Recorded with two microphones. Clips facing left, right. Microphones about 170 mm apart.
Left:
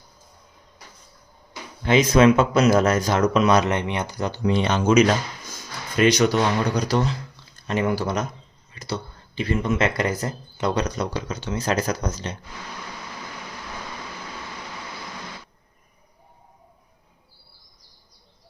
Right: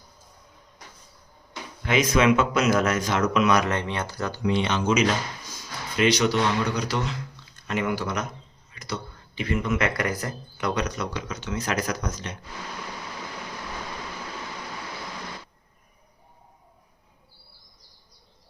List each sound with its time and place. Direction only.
1.8 s a man's voice: 30° left (ahead or behind)
4.4 s a man's voice: 40° left (ahead or behind)